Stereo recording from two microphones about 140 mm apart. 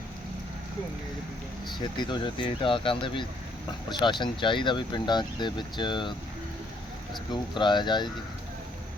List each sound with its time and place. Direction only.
2.0 s speech: 35° left (ahead or behind)
7.5 s speech: 35° left (ahead or behind)